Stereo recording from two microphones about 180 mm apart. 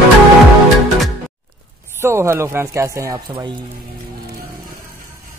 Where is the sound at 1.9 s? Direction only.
15° right (ahead or behind).